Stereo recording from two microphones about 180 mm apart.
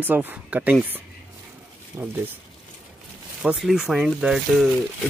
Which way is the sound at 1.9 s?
10° right (ahead or behind).